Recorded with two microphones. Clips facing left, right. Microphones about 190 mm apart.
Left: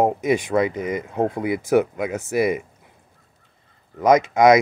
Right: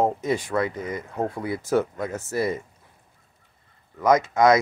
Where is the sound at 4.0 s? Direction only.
15° left (ahead or behind).